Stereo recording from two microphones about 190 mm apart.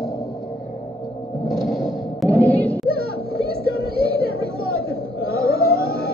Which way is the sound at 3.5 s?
55° right (ahead or behind).